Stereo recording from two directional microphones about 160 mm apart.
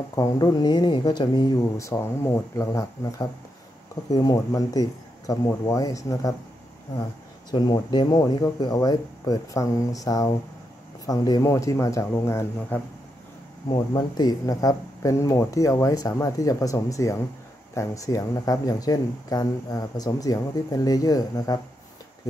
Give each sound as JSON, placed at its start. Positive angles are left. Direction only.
{"t": 0.1, "sound": "speech", "side_deg": 25}
{"t": 1.8, "sound": "speech", "side_deg": 20}
{"t": 7.5, "sound": "speech", "side_deg": 30}
{"t": 13.7, "sound": "speech", "side_deg": 25}